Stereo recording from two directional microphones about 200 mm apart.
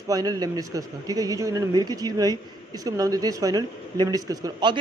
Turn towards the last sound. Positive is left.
turn(degrees=-20)  # may be behind; listen again after turning